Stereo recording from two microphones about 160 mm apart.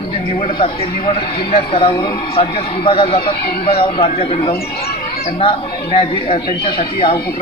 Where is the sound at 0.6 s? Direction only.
35° left (ahead or behind).